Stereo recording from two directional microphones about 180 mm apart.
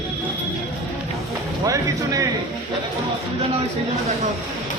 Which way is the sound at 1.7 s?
20° right (ahead or behind).